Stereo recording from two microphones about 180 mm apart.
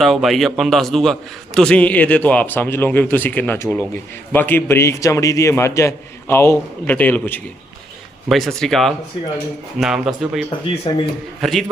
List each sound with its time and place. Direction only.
0.0 s a man's voice: centre (ahead or behind)
10.9 s a man's voice: 25° left (ahead or behind)
11.3 s a man's voice: centre (ahead or behind)